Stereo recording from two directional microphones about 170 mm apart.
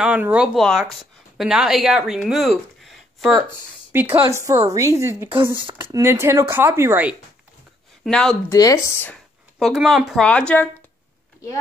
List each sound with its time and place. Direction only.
0.0 s speech: 5° right (ahead or behind)
3.9 s a woman's voice: 10° right (ahead or behind)
8.0 s speech: 5° left (ahead or behind)
8.5 s speech: 20° left (ahead or behind)
9.6 s speech: centre (ahead or behind)